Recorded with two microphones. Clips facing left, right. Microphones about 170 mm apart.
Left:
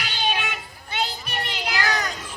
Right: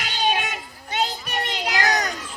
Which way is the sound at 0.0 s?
40° right (ahead or behind).